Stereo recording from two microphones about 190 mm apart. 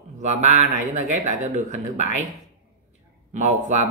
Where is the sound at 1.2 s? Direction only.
40° right (ahead or behind).